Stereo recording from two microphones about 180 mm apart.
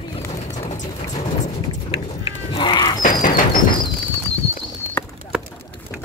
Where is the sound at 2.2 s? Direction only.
30° left (ahead or behind).